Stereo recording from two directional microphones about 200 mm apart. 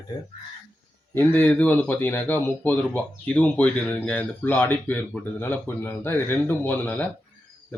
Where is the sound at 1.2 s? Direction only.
10° left (ahead or behind).